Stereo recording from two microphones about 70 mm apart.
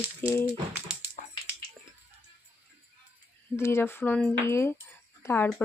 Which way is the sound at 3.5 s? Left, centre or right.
Left.